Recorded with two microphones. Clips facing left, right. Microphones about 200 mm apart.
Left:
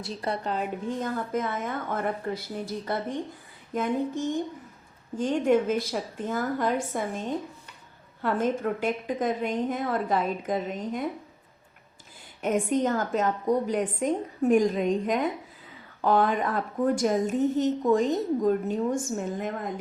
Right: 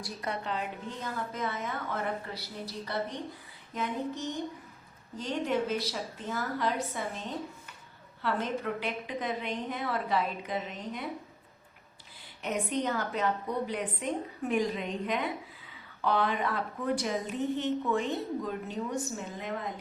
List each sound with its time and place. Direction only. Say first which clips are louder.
0.0 s a woman's voice: left 5 dB; 25° left (ahead or behind); by 11.0 s 45° left (ahead or behind)
12.4 s a woman's voice: left 7 dB; 50° left (ahead or behind)